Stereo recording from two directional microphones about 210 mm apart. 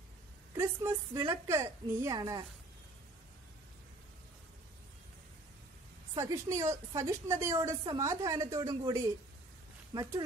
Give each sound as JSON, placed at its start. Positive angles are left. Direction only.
{"t": 0.6, "sound": "a woman's voice", "side_deg": -15}
{"t": 6.1, "sound": "a woman's voice", "side_deg": -15}